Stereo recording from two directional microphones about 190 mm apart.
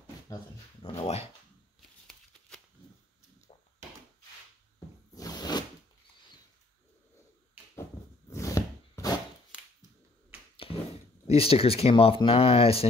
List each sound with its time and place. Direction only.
0.8 s dog: 30° left (ahead or behind)
1.8 s a sound: centre (ahead or behind)
4.7 s zipper: 20° left (ahead or behind)
8.3 s a sound: 15° left (ahead or behind)
10.5 s finger snapping: 30° left (ahead or behind)
11.2 s speech: 30° left (ahead or behind)